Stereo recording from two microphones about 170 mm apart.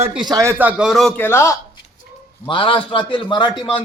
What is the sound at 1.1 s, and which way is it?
Speech, 15° left (ahead or behind).